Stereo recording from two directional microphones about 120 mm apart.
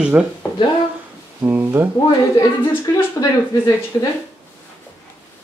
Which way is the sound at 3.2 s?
35° left (ahead or behind).